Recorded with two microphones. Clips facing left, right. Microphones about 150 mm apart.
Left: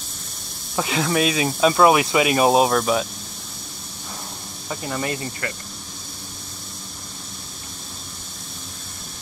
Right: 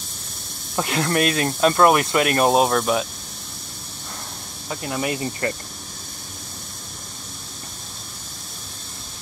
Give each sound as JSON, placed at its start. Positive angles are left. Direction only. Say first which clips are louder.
{"t": 0.7, "sound": "speech", "louder": "even", "side_deg": 0}
{"t": 4.6, "sound": "speech", "louder": "right 1 dB", "side_deg": -5}
{"t": 5.4, "sound": "speech", "louder": "right 8 dB", "side_deg": -30}